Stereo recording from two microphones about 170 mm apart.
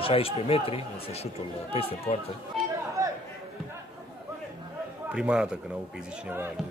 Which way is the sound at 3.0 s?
20° right (ahead or behind).